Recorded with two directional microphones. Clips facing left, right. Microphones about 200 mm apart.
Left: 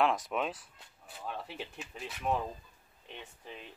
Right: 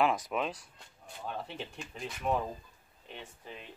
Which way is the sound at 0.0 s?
Centre (ahead or behind).